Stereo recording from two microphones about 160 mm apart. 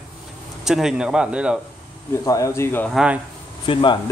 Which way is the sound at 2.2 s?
20° left (ahead or behind).